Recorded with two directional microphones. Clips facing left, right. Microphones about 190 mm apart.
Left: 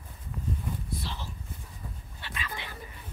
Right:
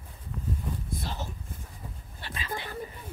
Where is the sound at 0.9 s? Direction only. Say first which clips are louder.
Right 2 dB; 45° right (ahead or behind).